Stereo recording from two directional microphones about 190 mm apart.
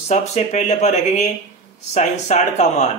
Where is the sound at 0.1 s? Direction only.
35° left (ahead or behind).